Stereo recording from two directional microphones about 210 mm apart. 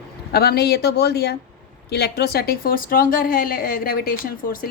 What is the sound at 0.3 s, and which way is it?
A woman's voice, 50° left (ahead or behind).